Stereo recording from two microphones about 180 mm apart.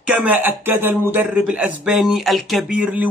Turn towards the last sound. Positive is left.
turn(degrees=-10)  # may be behind; listen again after turning